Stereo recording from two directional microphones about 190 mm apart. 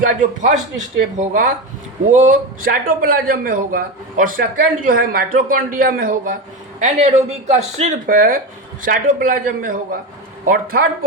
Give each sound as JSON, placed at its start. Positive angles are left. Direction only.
{"t": 0.0, "sound": "a man's voice", "side_deg": -45}